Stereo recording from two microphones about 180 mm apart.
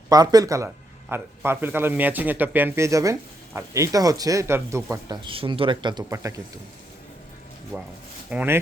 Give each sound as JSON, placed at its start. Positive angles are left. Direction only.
{"t": 0.1, "sound": "speech", "side_deg": -20}
{"t": 7.7, "sound": "speech", "side_deg": 5}
{"t": 8.3, "sound": "speech", "side_deg": -10}